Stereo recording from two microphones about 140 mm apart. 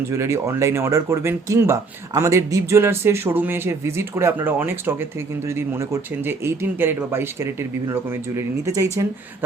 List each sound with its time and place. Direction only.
0.1 s speech: 20° right (ahead or behind)